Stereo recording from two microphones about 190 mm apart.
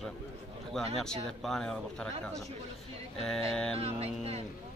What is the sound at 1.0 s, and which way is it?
Speech, centre (ahead or behind).